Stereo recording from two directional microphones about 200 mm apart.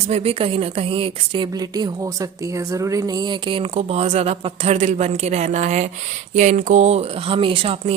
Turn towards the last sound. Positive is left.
turn(degrees=-30)  # may be behind; listen again after turning